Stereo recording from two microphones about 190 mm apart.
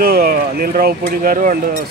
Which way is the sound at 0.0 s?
50° right (ahead or behind).